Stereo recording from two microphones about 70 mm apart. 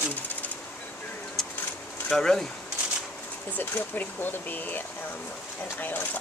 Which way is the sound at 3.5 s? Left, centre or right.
Left.